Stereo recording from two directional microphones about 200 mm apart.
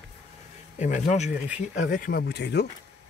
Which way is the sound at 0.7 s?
40° left (ahead or behind).